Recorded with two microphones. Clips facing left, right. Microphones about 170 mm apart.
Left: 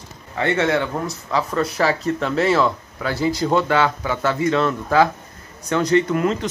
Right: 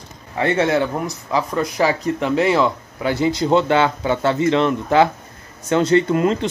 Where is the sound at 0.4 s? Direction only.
25° right (ahead or behind).